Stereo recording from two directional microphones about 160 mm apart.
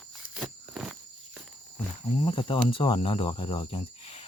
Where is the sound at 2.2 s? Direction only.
30° left (ahead or behind).